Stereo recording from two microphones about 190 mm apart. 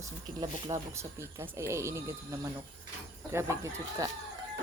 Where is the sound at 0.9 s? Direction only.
15° right (ahead or behind).